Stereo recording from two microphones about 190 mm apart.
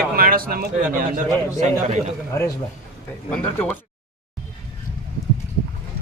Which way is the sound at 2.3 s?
15° left (ahead or behind).